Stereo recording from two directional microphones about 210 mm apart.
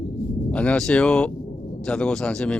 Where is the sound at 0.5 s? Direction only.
5° left (ahead or behind).